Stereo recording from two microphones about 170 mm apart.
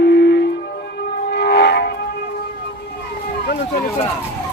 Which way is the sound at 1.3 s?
75° left (ahead or behind).